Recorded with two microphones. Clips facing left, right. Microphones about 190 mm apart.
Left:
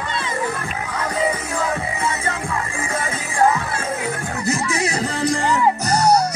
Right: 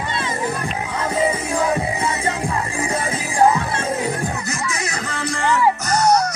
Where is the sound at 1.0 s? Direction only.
15° right (ahead or behind).